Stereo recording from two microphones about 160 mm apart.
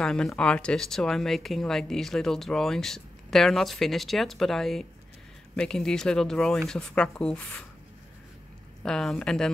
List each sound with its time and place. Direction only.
0.0 s speech: 5° left (ahead or behind)
8.8 s speech: 5° left (ahead or behind)